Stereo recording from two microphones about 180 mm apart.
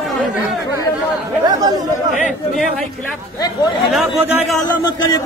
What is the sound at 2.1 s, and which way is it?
Speech, 45° left (ahead or behind).